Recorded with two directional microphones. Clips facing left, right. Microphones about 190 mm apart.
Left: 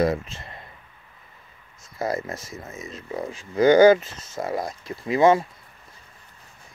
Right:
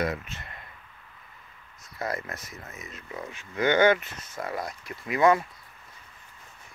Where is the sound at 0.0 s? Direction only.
30° left (ahead or behind).